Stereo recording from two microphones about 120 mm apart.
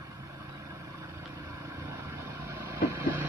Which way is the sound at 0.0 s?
30° right (ahead or behind).